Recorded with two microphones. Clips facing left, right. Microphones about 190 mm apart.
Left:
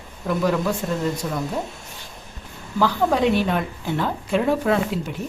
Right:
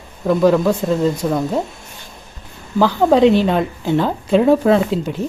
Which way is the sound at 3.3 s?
25° right (ahead or behind).